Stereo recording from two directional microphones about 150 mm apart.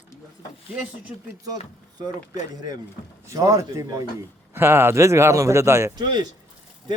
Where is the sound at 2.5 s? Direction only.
25° right (ahead or behind).